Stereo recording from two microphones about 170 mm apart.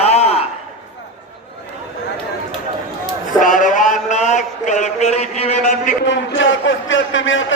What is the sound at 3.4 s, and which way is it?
A man's voice, 50° left (ahead or behind).